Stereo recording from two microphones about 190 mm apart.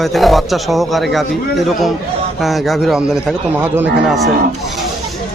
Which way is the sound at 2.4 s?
Centre (ahead or behind).